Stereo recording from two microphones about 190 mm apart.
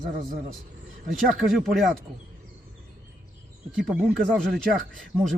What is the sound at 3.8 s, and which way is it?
Speech, centre (ahead or behind).